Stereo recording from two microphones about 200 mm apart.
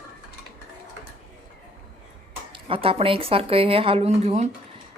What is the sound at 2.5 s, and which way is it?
Speech, 25° right (ahead or behind).